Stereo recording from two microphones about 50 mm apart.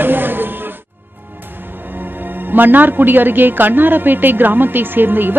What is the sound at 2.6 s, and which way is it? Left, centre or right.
A woman's voice, right.